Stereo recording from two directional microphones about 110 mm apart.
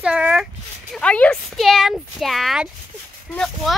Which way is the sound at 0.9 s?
10° left (ahead or behind).